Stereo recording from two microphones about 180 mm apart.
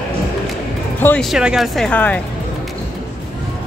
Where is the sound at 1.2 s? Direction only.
5° right (ahead or behind).